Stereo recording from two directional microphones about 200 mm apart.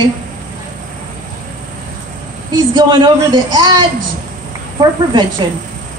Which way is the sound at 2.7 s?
20° right (ahead or behind).